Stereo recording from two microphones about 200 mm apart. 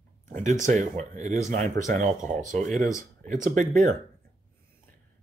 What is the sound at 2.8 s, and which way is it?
Speech, 15° left (ahead or behind).